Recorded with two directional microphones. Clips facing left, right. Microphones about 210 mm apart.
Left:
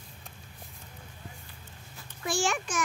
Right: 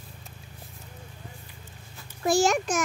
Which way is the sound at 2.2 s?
40° right (ahead or behind).